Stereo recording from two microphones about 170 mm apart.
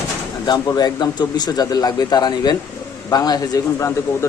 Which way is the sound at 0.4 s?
25° left (ahead or behind).